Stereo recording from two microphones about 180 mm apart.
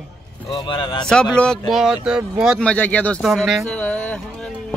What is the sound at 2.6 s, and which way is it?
Speech, 5° left (ahead or behind).